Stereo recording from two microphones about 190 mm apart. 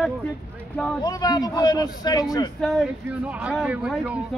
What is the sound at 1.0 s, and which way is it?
A man's voice, 20° left (ahead or behind).